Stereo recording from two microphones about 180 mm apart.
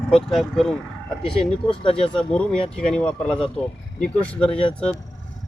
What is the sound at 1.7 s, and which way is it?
Speech, 30° left (ahead or behind).